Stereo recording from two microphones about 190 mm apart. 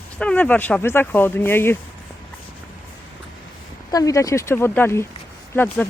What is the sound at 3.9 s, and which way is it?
Speech, 20° left (ahead or behind).